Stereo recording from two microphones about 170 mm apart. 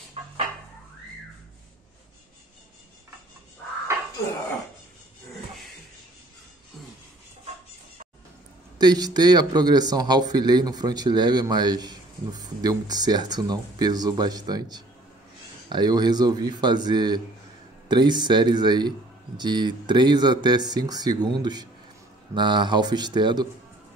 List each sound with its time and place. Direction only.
8.7 s speech: 25° right (ahead or behind)